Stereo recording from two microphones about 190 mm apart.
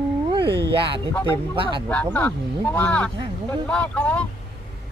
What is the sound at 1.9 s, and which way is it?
Speech, 5° left (ahead or behind).